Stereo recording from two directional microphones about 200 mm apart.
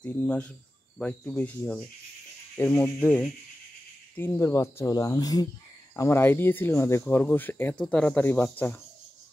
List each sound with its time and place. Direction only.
0.0 s speech: 5° left (ahead or behind)